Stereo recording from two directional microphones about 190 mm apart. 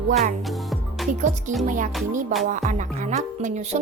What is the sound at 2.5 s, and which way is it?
Music, 40° right (ahead or behind).